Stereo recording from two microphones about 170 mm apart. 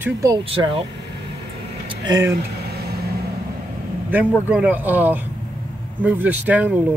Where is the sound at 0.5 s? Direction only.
35° right (ahead or behind).